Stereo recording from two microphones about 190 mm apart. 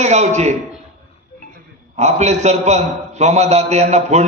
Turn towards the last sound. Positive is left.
turn(degrees=-35)  # may be behind; listen again after turning